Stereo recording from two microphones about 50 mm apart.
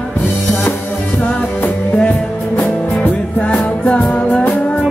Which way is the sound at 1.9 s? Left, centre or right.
Left.